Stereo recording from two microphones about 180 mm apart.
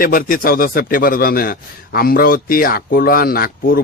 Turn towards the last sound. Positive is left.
turn(degrees=55)  # may be behind; listen again after turning